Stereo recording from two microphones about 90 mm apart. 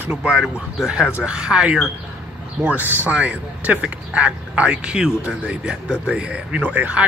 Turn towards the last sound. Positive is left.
turn(degrees=-15)  # may be behind; listen again after turning